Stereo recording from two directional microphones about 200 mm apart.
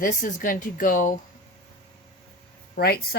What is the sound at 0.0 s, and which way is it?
Speech, 45° left (ahead or behind).